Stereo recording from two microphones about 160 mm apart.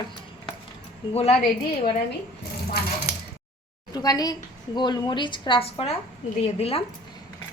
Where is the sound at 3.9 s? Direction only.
25° left (ahead or behind).